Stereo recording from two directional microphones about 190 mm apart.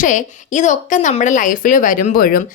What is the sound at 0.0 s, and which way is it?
Speech, 40° left (ahead or behind).